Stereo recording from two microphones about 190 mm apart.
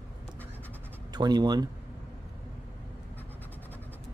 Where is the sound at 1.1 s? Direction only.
20° right (ahead or behind).